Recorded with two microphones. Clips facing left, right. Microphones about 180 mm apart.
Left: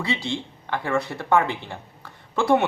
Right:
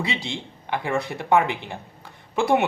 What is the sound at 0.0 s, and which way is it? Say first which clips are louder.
Speech: left 2 dB; 15° right (ahead or behind).